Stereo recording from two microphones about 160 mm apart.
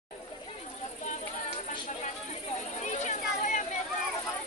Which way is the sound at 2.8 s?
50° left (ahead or behind).